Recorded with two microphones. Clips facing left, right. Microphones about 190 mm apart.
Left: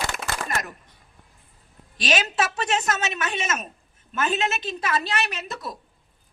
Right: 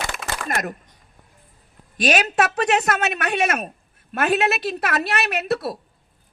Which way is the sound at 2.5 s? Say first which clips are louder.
Right 5 dB; 60° right (ahead or behind).